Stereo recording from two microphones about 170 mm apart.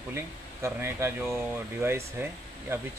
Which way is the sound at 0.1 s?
15° right (ahead or behind).